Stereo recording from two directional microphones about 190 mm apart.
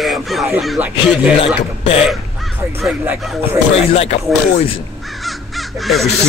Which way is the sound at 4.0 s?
40° left (ahead or behind).